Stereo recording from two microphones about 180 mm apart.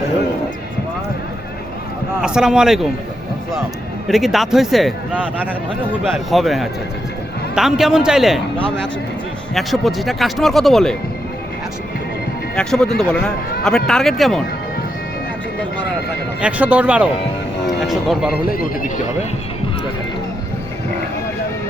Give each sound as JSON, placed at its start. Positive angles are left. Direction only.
{"t": 2.2, "sound": "a man's voice", "side_deg": -5}
{"t": 4.1, "sound": "a man's voice", "side_deg": 0}
{"t": 12.5, "sound": "a man's voice", "side_deg": 5}
{"t": 16.4, "sound": "speech", "side_deg": -10}
{"t": 18.5, "sound": "speech", "side_deg": 50}